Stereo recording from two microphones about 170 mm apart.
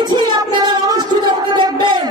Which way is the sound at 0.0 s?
25° right (ahead or behind).